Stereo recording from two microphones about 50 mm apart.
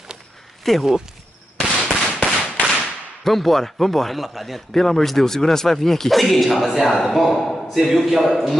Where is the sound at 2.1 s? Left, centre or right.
Centre.